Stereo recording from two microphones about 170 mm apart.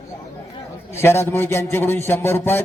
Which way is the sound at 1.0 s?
15° left (ahead or behind).